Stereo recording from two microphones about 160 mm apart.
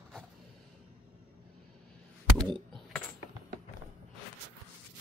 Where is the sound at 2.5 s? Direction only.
Centre (ahead or behind).